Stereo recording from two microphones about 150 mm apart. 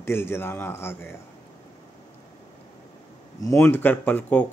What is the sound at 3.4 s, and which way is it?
Speech, 15° left (ahead or behind).